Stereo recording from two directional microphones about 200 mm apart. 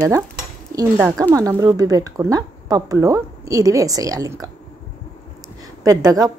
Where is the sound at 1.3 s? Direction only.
15° right (ahead or behind).